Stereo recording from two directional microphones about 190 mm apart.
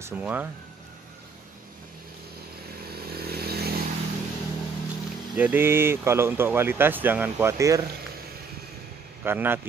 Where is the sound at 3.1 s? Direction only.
55° right (ahead or behind).